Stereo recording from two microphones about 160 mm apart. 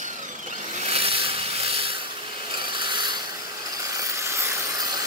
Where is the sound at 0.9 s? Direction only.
35° right (ahead or behind).